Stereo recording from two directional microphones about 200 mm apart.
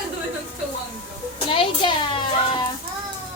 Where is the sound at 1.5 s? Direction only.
25° left (ahead or behind).